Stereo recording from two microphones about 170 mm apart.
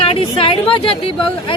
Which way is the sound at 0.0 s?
35° left (ahead or behind).